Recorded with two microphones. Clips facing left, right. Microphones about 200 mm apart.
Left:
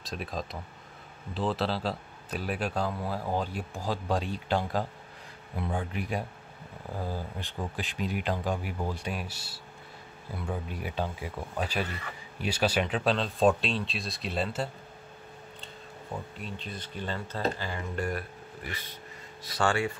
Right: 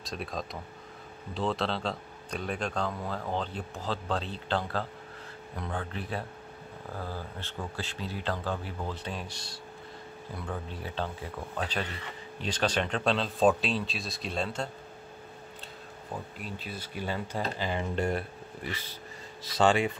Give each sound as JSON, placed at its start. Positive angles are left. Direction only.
{"t": 0.0, "sound": "speech", "side_deg": 0}
{"t": 16.3, "sound": "speech", "side_deg": -5}